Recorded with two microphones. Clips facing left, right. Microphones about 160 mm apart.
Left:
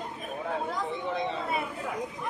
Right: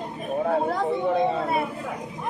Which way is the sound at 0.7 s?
60° right (ahead or behind).